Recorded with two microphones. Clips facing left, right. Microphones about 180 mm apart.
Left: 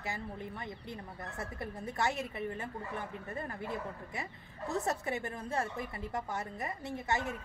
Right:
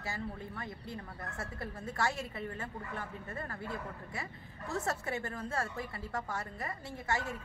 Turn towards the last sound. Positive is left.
turn(degrees=20)  # may be behind; listen again after turning